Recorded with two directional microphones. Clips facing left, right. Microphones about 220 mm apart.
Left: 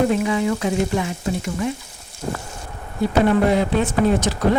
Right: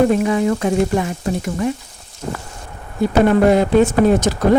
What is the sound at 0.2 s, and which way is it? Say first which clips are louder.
Speech: right 4 dB; 45° right (ahead or behind).